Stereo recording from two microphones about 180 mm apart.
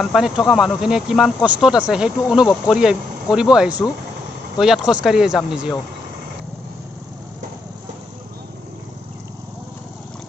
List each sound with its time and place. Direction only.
0.0 s speech: centre (ahead or behind)